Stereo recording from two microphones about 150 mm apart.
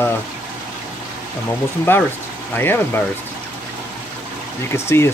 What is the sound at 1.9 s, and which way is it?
Speech, 15° left (ahead or behind).